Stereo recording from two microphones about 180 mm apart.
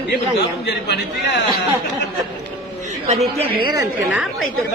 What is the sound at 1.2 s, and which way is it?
Speech, 70° left (ahead or behind).